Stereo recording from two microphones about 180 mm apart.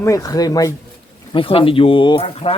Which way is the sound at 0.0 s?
20° left (ahead or behind).